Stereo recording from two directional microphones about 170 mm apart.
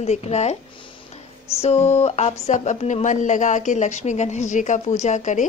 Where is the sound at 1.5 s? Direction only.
40° left (ahead or behind).